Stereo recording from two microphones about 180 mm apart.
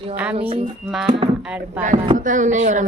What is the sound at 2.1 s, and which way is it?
Speech, 45° right (ahead or behind).